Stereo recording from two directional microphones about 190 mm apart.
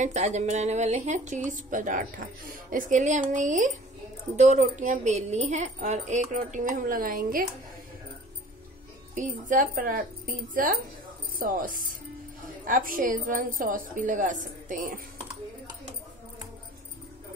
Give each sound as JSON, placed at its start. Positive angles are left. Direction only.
{"t": 0.0, "sound": "a woman's voice", "side_deg": -40}
{"t": 9.1, "sound": "a woman's voice", "side_deg": -40}